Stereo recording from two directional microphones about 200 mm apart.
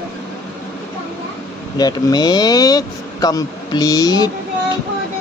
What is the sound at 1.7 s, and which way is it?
Speech, 20° left (ahead or behind).